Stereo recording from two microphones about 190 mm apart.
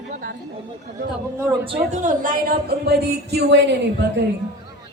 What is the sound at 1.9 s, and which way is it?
Speech, 40° right (ahead or behind).